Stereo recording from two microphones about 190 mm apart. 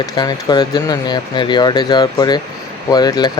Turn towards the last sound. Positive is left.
turn(degrees=20)  # may be behind; listen again after turning